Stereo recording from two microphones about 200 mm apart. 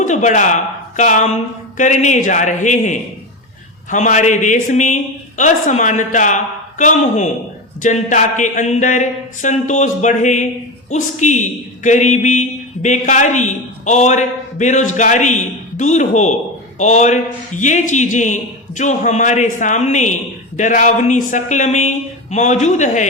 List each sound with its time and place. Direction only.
0.0 s a man's voice: 35° left (ahead or behind)